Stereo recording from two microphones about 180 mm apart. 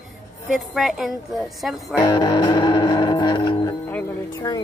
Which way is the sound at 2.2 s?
25° left (ahead or behind).